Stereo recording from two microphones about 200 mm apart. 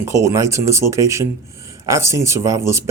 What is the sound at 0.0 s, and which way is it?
Speech, 15° right (ahead or behind).